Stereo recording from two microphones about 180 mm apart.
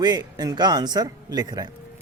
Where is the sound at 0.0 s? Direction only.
20° right (ahead or behind).